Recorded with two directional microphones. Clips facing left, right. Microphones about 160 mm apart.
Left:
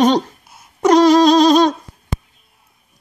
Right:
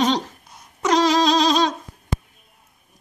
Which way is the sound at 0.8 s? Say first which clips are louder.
Left 8 dB; 55° left (ahead or behind).